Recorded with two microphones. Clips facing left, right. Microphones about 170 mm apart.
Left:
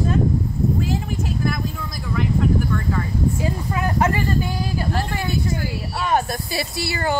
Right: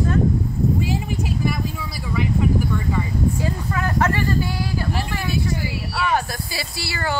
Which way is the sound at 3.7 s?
20° left (ahead or behind).